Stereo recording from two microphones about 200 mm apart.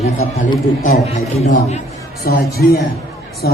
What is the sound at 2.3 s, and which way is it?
Speech, 45° left (ahead or behind).